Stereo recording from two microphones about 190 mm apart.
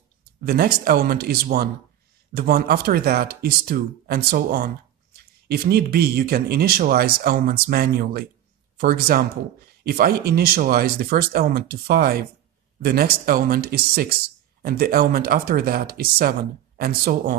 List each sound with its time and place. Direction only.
0.5 s speech: 55° right (ahead or behind)